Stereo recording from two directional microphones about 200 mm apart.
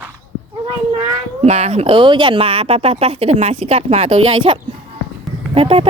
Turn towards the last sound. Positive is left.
turn(degrees=-30)  # may be behind; listen again after turning